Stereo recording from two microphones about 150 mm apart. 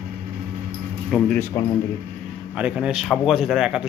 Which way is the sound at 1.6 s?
20° left (ahead or behind).